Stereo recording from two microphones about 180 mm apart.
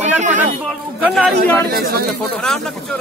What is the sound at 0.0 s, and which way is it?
Speech, 40° right (ahead or behind).